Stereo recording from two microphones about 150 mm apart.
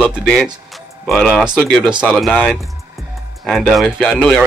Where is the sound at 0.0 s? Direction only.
5° right (ahead or behind).